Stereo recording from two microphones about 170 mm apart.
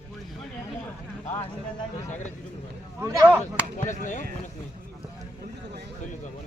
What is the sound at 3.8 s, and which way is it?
Speech, 45° left (ahead or behind).